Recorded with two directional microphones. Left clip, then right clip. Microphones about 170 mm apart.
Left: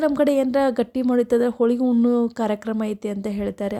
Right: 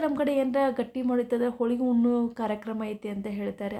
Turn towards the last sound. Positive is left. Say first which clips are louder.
# left 7 dB
turn(degrees=50)  # may be behind; listen again after turning